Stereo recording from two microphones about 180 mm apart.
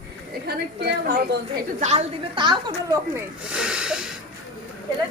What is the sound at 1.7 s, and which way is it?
A woman's voice, 40° right (ahead or behind).